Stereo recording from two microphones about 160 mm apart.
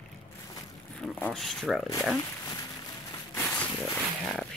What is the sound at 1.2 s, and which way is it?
Speech, 5° left (ahead or behind).